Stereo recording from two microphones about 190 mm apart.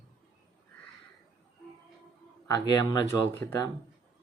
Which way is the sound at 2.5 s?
20° left (ahead or behind).